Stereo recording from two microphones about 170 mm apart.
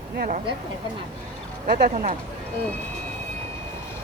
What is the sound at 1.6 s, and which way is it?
Speech, 65° right (ahead or behind).